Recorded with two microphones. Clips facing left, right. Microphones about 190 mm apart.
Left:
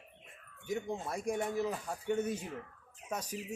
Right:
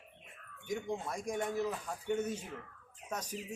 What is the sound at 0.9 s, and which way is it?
Speech, 5° left (ahead or behind).